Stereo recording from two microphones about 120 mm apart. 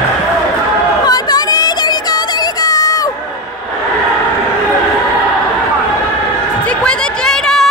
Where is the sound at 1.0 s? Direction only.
35° left (ahead or behind).